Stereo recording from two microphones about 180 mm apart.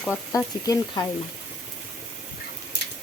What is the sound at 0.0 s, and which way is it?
Speech, 15° left (ahead or behind).